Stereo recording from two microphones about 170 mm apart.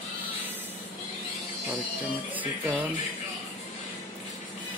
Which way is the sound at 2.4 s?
10° right (ahead or behind).